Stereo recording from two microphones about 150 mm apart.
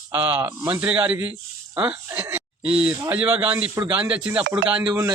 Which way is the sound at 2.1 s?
15° right (ahead or behind).